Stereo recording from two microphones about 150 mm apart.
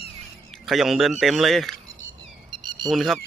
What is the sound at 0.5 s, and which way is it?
Speech, centre (ahead or behind).